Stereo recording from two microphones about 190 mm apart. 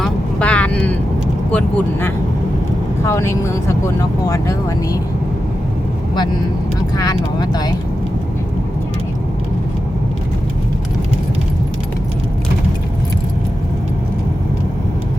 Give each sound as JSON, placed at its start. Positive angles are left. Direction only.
{"t": 0.0, "sound": "vehicle", "side_deg": 5}
{"t": 1.5, "sound": "speech", "side_deg": 10}
{"t": 6.9, "sound": "speech", "side_deg": 20}